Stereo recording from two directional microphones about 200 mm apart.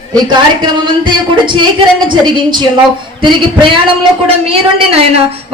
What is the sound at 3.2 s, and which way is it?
A woman's voice, 25° right (ahead or behind).